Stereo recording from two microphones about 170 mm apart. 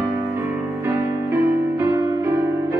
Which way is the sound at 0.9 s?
15° right (ahead or behind).